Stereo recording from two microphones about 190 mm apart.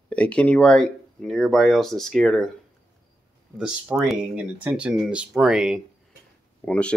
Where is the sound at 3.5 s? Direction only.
5° right (ahead or behind).